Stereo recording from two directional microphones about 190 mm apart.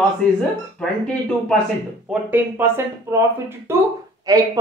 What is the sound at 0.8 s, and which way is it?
Speech, centre (ahead or behind).